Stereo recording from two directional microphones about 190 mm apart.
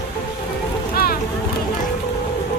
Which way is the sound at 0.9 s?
55° left (ahead or behind).